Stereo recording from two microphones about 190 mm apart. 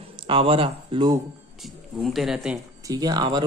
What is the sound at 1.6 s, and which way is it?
Speech, centre (ahead or behind).